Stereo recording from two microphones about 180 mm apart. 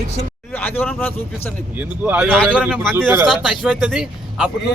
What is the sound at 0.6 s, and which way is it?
Speech, 10° left (ahead or behind).